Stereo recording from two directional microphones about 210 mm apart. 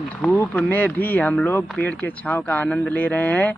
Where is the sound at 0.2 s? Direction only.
5° left (ahead or behind).